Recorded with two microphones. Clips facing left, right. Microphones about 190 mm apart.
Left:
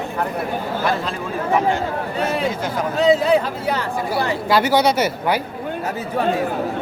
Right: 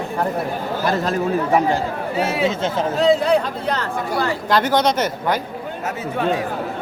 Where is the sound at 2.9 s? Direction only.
Centre (ahead or behind).